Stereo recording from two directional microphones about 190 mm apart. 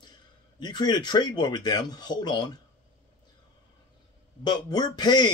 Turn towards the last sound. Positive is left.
turn(degrees=20)  # may be behind; listen again after turning